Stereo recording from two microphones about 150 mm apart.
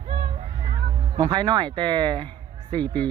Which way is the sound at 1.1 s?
25° right (ahead or behind).